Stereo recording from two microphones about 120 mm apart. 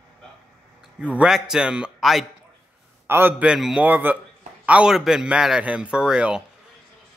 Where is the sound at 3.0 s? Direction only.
20° right (ahead or behind).